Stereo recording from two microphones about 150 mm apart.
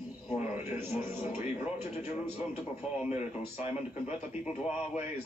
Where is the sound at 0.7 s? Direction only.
15° right (ahead or behind).